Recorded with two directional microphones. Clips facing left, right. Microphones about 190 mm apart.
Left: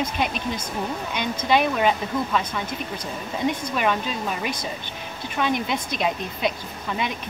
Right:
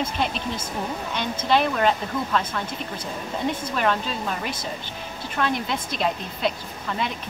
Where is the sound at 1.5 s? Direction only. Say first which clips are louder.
Even; 10° left (ahead or behind).